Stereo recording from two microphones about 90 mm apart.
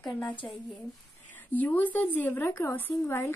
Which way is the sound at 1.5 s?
20° left (ahead or behind).